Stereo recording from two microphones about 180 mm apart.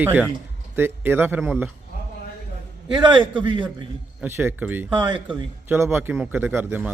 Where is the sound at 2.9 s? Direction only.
25° right (ahead or behind).